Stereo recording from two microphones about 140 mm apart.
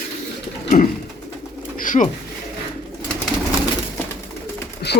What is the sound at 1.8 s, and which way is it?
Bird, 70° left (ahead or behind).